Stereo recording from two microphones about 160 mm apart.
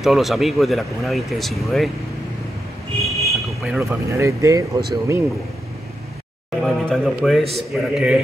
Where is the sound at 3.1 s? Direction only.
Centre (ahead or behind).